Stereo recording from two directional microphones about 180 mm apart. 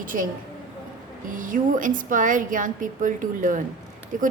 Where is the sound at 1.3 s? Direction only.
50° right (ahead or behind).